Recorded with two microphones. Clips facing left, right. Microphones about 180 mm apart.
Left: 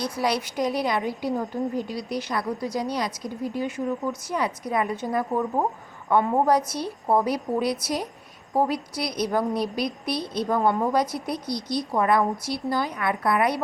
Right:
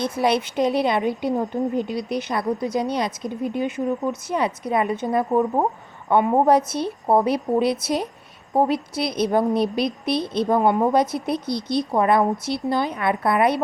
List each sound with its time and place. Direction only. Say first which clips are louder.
0.0 s a woman's voice: right 5 dB; 25° right (ahead or behind)